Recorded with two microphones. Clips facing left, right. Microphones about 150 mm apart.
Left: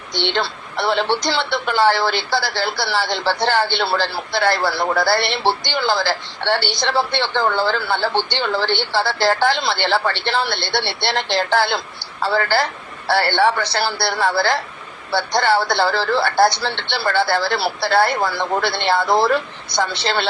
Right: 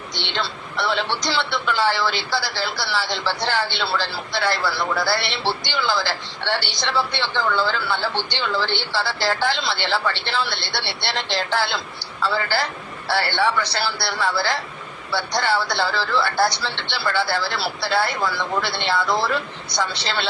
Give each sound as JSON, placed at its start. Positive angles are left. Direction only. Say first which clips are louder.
{"t": 0.1, "sound": "speech", "louder": "left 7 dB", "side_deg": 55}